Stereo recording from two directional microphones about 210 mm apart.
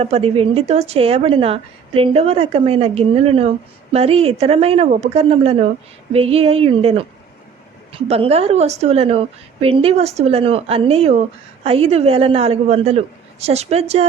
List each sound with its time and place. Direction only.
0.0 s speech: 30° right (ahead or behind)